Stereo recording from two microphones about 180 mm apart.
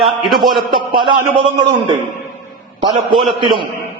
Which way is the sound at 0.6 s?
25° right (ahead or behind).